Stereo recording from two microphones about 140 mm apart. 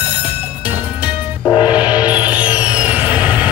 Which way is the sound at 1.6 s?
10° right (ahead or behind).